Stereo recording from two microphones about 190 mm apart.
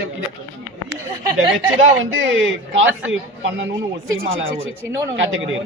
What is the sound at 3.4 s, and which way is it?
Speech, 75° right (ahead or behind).